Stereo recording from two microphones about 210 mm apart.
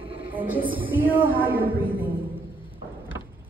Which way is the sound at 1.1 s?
10° right (ahead or behind).